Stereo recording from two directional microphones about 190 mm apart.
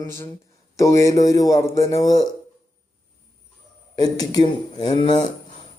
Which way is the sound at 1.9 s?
20° left (ahead or behind).